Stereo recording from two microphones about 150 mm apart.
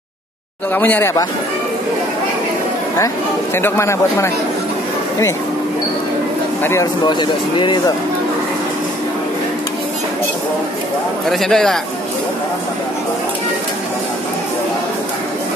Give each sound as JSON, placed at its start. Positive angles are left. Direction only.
{"t": 0.7, "sound": "speech", "side_deg": 10}
{"t": 3.5, "sound": "speech", "side_deg": 15}
{"t": 6.6, "sound": "speech", "side_deg": 15}
{"t": 7.1, "sound": "speech", "side_deg": 30}
{"t": 11.2, "sound": "a man's voice", "side_deg": 0}